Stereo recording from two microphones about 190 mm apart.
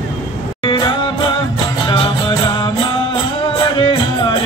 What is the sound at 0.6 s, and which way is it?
Music, 25° left (ahead or behind).